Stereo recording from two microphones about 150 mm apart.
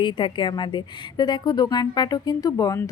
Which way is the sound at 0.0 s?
30° left (ahead or behind).